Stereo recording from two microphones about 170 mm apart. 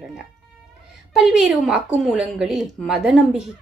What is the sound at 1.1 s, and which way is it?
Speech, 5° right (ahead or behind).